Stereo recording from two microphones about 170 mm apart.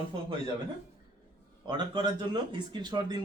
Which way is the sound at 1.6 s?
25° right (ahead or behind).